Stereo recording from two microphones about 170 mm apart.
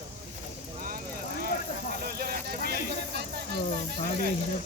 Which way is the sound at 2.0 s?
65° right (ahead or behind).